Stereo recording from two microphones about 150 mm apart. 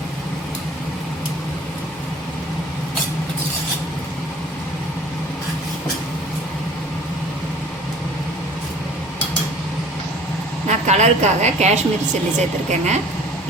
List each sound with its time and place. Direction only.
10.7 s a woman's voice: 50° right (ahead or behind)